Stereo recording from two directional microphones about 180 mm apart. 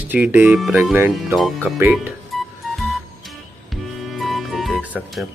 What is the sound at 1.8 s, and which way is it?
Speech, 10° right (ahead or behind).